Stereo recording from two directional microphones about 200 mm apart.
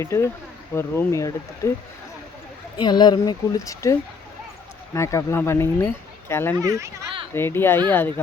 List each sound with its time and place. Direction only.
0.0 s speech: 15° left (ahead or behind)
2.7 s speech: 20° left (ahead or behind)
4.9 s speech: 15° left (ahead or behind)
6.7 s a child's voice: 15° right (ahead or behind)
7.3 s speech: 10° left (ahead or behind)